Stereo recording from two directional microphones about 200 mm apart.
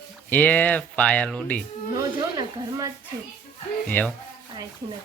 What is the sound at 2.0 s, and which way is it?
Speech, 20° right (ahead or behind).